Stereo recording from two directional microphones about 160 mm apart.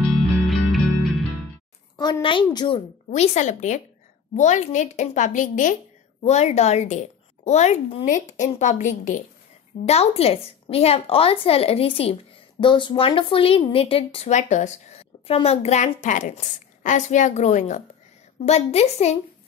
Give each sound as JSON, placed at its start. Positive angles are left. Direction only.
{"t": 0.5, "sound": "music", "side_deg": 0}
{"t": 2.0, "sound": "a woman's voice", "side_deg": 25}
{"t": 3.1, "sound": "a woman's voice", "side_deg": 50}
{"t": 9.8, "sound": "a woman's voice", "side_deg": 40}